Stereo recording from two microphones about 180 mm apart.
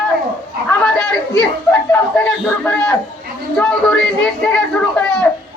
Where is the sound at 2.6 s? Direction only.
10° left (ahead or behind).